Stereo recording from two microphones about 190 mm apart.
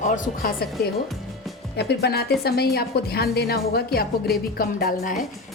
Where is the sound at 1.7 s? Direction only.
60° left (ahead or behind).